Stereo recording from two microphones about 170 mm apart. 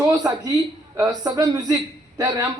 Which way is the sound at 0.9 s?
20° right (ahead or behind).